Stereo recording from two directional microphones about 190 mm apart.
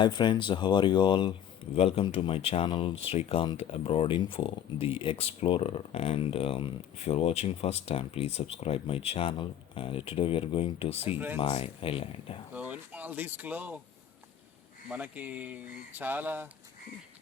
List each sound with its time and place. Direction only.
0.0 s speech: 25° left (ahead or behind)
12.5 s speech: 5° right (ahead or behind)
14.8 s speech: 10° right (ahead or behind)